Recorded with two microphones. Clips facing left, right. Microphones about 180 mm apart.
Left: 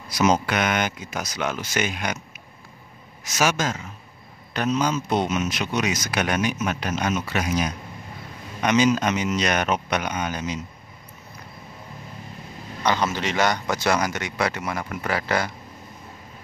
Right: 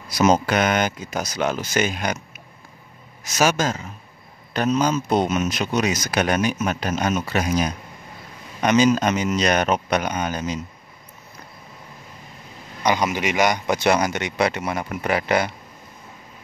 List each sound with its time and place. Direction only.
0.2 s speech: 35° right (ahead or behind)
12.8 s a man's voice: 15° right (ahead or behind)